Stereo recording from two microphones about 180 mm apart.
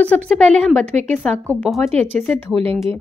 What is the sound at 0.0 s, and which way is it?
Speech, 10° left (ahead or behind).